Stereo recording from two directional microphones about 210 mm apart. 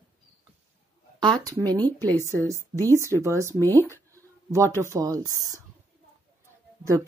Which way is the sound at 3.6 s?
10° left (ahead or behind).